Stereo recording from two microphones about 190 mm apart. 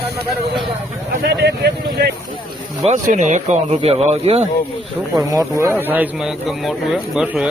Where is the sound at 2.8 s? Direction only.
40° right (ahead or behind).